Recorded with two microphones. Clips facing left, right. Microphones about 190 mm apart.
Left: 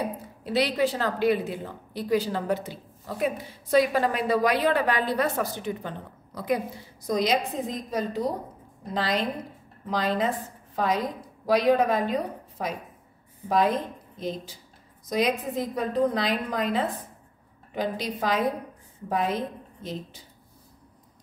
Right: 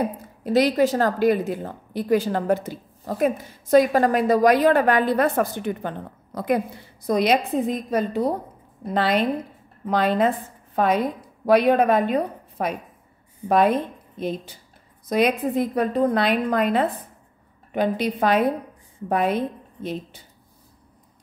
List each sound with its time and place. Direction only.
0.4 s a woman's voice: 45° right (ahead or behind)
15.0 s a woman's voice: 60° right (ahead or behind)